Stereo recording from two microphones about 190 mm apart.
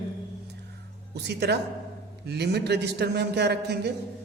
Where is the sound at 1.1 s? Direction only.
60° right (ahead or behind).